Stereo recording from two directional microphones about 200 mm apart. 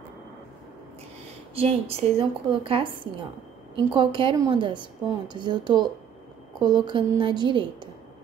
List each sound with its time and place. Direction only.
1.5 s a woman's voice: 30° right (ahead or behind)